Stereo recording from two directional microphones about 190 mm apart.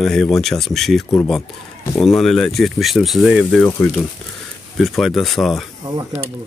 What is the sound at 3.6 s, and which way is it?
Speech, 10° left (ahead or behind).